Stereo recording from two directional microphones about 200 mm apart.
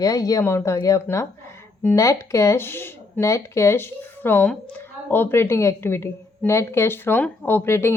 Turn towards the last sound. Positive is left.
turn(degrees=15)  # may be behind; listen again after turning